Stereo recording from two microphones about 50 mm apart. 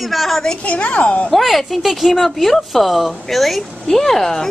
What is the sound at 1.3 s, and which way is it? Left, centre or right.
Speech, centre.